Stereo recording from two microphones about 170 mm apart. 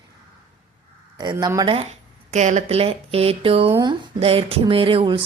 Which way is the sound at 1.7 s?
40° right (ahead or behind).